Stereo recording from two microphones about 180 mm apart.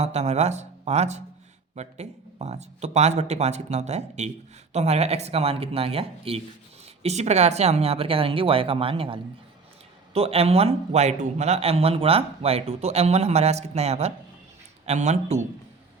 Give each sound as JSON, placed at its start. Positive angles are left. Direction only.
{"t": 0.0, "sound": "a man's voice", "side_deg": -35}